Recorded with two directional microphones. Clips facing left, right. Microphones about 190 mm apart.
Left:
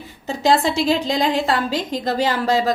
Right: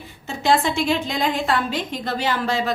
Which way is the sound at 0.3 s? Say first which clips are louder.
Left 2 dB; 35° left (ahead or behind).